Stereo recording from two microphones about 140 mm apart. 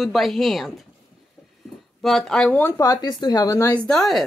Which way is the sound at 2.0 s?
Centre (ahead or behind).